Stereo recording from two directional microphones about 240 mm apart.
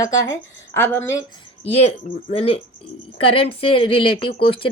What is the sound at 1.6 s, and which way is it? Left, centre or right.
Speech, left.